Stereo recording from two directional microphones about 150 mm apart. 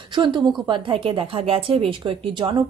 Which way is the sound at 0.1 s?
30° right (ahead or behind).